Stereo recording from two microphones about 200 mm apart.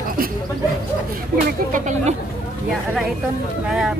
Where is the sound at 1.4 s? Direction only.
40° right (ahead or behind).